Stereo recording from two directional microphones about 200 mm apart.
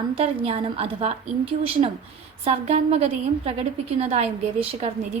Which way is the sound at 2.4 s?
35° right (ahead or behind).